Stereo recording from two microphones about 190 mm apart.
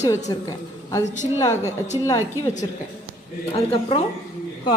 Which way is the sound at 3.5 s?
30° left (ahead or behind).